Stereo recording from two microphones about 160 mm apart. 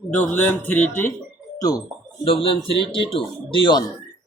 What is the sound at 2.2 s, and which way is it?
Speech, 35° left (ahead or behind).